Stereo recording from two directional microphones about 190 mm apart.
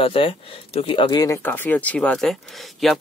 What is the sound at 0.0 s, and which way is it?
Speech, 30° left (ahead or behind).